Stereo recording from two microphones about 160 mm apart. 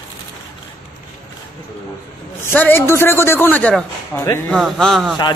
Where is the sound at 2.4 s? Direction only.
10° left (ahead or behind).